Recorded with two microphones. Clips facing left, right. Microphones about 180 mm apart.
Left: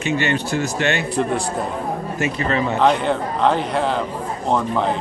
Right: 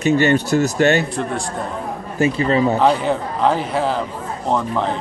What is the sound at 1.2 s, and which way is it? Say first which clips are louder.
Speech: left 3 dB; centre (ahead or behind).